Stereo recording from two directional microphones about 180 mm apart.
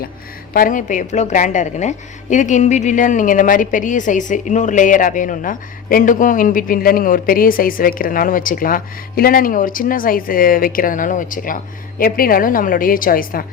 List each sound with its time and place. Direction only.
0.5 s a woman's voice: 50° left (ahead or behind)